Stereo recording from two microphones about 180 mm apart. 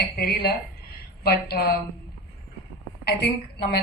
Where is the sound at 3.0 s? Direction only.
60° left (ahead or behind).